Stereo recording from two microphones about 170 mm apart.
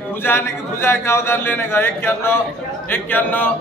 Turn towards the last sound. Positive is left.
turn(degrees=10)  # may be behind; listen again after turning